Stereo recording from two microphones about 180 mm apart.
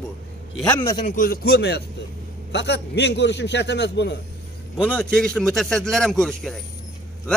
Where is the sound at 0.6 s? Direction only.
10° left (ahead or behind).